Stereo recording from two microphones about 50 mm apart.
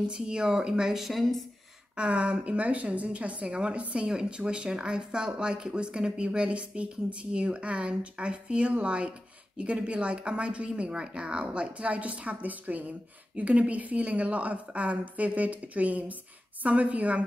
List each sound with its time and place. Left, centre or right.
0.1 s speech: centre
2.0 s a woman's voice: right